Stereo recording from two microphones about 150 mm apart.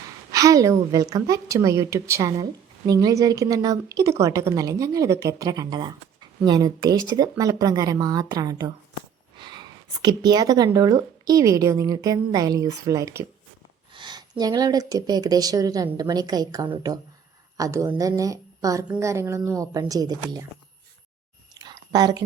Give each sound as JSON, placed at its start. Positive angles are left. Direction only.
{"t": 0.3, "sound": "a woman's voice", "side_deg": -20}
{"t": 17.6, "sound": "a woman's voice", "side_deg": -20}
{"t": 21.5, "sound": "a sound", "side_deg": -25}